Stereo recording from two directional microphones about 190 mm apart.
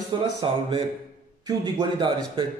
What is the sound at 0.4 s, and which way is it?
Speech, 25° right (ahead or behind).